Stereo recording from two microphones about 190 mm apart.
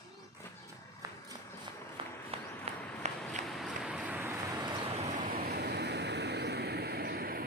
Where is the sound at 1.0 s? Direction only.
20° right (ahead or behind).